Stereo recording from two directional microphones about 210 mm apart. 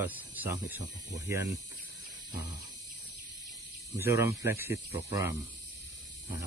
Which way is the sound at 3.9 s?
10° right (ahead or behind).